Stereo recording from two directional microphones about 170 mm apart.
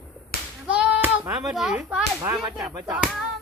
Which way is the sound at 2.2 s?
25° right (ahead or behind).